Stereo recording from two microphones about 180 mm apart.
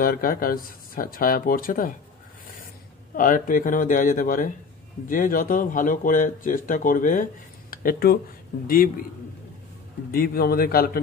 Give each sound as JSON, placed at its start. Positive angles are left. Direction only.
{"t": 0.0, "sound": "speech", "side_deg": 55}
{"t": 3.2, "sound": "speech", "side_deg": 50}
{"t": 10.1, "sound": "a man's voice", "side_deg": 55}